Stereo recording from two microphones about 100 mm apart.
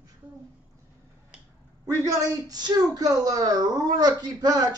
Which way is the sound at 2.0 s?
40° right (ahead or behind).